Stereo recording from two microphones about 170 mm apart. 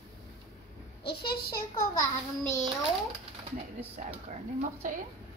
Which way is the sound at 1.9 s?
20° left (ahead or behind).